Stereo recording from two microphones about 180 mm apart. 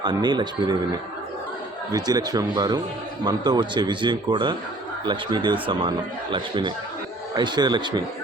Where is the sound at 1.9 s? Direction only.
20° right (ahead or behind).